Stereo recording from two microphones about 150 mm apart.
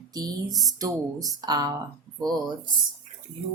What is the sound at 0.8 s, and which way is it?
Speech, 25° right (ahead or behind).